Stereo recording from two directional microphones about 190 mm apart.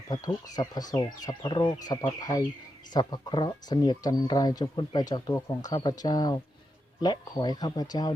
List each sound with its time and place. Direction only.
0.1 s speech: 20° left (ahead or behind)